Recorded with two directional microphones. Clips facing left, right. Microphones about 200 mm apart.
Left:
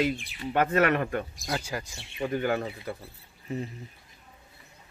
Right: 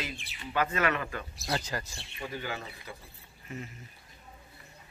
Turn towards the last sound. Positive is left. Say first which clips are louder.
# left 8 dB
turn(degrees=35)  # may be behind; listen again after turning